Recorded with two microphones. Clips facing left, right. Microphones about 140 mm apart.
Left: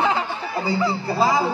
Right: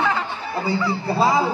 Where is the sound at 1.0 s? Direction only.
30° right (ahead or behind).